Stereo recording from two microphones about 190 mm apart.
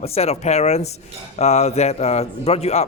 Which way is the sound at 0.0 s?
35° left (ahead or behind).